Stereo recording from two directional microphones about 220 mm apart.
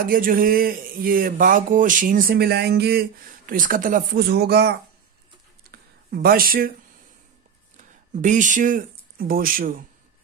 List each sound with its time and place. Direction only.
0.0 s speech: 40° right (ahead or behind)
5.7 s a sound: 45° right (ahead or behind)
7.7 s speech: 35° right (ahead or behind)